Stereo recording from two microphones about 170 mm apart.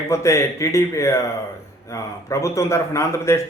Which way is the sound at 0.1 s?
15° left (ahead or behind).